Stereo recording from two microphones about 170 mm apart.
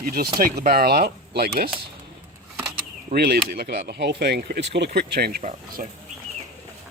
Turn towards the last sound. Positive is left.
turn(degrees=-50)  # may be behind; listen again after turning